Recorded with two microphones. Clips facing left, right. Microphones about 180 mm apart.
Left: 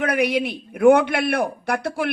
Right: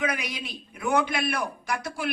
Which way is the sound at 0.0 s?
60° left (ahead or behind).